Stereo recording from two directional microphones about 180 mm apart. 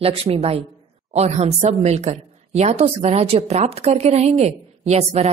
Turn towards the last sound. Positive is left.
turn(degrees=-35)  # may be behind; listen again after turning